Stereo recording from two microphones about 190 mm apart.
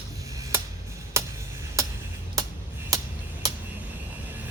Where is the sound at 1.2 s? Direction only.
15° right (ahead or behind).